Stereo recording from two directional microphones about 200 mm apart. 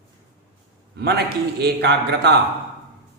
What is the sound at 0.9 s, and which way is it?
A man's voice, 55° right (ahead or behind).